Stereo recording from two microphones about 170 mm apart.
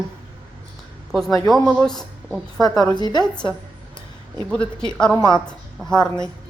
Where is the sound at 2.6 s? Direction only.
25° left (ahead or behind).